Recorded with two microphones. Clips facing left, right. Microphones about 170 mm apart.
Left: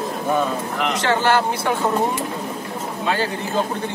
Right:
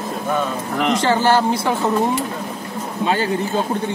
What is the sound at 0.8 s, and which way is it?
Speech, 35° right (ahead or behind).